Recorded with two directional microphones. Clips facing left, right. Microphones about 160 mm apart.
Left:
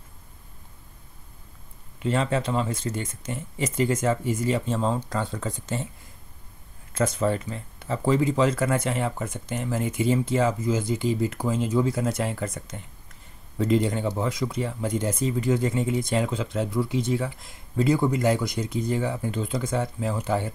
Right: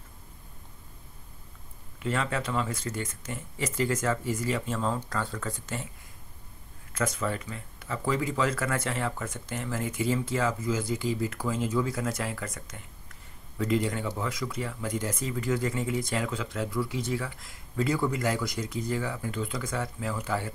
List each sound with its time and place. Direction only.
2.0 s speech: 25° left (ahead or behind)
6.9 s speech: 30° left (ahead or behind)